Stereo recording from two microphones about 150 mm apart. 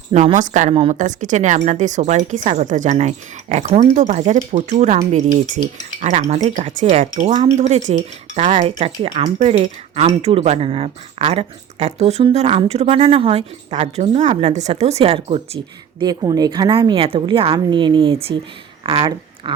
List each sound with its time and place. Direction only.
0.3 s a woman's voice: 55° right (ahead or behind)
16.0 s a woman's voice: 25° right (ahead or behind)
18.8 s a sound: 35° right (ahead or behind)